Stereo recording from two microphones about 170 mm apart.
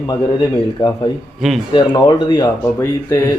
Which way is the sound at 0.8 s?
30° left (ahead or behind).